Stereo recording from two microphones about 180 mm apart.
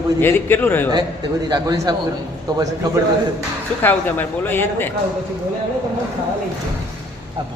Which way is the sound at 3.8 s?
10° left (ahead or behind).